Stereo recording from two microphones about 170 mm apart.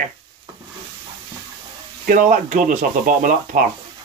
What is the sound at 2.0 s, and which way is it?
Speech, 50° right (ahead or behind).